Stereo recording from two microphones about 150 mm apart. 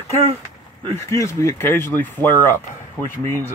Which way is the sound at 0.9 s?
20° left (ahead or behind).